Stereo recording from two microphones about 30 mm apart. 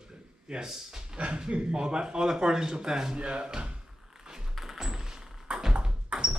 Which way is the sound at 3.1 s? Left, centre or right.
Right.